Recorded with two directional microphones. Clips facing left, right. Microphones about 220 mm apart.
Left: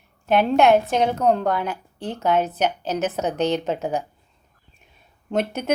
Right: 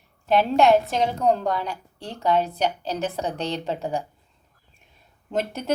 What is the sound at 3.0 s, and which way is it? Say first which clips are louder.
A woman's voice: left 6 dB; 20° left (ahead or behind).